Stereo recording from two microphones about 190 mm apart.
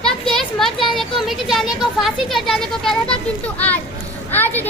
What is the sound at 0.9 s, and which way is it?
A child's voice, centre (ahead or behind).